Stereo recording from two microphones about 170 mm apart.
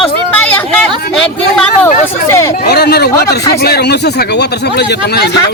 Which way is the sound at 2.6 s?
70° left (ahead or behind).